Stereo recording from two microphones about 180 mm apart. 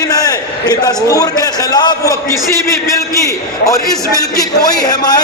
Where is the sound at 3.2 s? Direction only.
20° left (ahead or behind).